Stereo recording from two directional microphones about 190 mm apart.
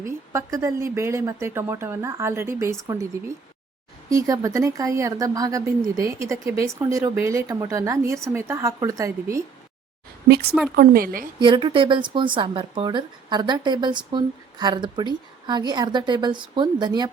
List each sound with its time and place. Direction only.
0.0 s speech: 15° right (ahead or behind)
10.8 s speech: 50° right (ahead or behind)
11.3 s speech: 25° right (ahead or behind)